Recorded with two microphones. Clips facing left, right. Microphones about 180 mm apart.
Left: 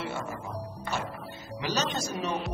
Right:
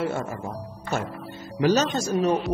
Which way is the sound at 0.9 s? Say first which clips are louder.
Right 7 dB; 45° right (ahead or behind).